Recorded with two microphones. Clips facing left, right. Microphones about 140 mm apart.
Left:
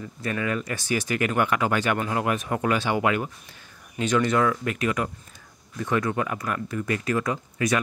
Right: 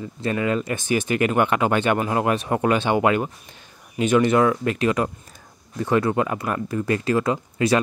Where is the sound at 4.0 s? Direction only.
20° right (ahead or behind).